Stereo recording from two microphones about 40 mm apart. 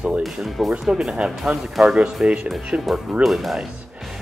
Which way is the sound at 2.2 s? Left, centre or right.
Right.